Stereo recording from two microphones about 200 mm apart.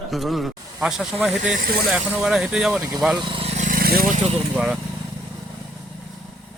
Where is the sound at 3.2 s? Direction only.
25° right (ahead or behind).